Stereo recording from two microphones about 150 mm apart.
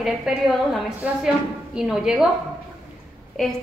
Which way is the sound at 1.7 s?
5° right (ahead or behind).